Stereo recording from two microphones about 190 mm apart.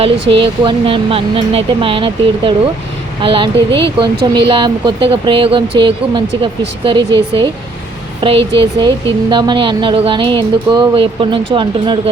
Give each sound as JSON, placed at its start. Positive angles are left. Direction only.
{"t": 0.0, "sound": "speech", "side_deg": -30}